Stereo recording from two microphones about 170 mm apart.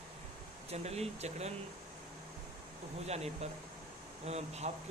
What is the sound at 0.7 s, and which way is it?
Speech, 40° right (ahead or behind).